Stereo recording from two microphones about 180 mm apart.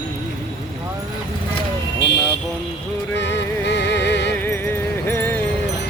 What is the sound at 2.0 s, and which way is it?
Vehicle, 75° left (ahead or behind).